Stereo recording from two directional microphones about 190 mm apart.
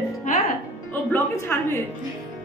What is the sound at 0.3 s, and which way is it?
Music, 45° left (ahead or behind).